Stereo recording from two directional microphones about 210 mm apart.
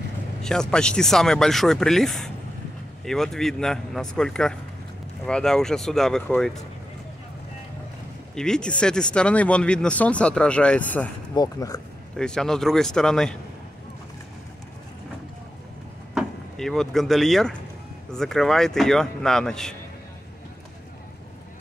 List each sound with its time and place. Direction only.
0.4 s speech: 5° left (ahead or behind)
8.4 s speech: 5° left (ahead or behind)
11.3 s speech: 15° left (ahead or behind)
12.2 s speech: 5° left (ahead or behind)
16.2 s speech: centre (ahead or behind)